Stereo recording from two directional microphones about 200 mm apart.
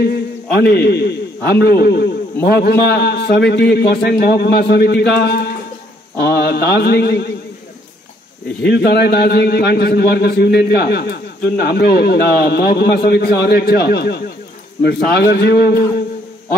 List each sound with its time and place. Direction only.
0.0 s a man's voice: 50° left (ahead or behind)
8.6 s a man's voice: 55° left (ahead or behind)